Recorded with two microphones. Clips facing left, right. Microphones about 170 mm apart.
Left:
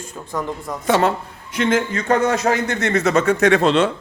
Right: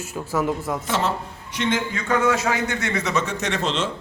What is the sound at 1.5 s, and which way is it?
A man's voice, 50° left (ahead or behind).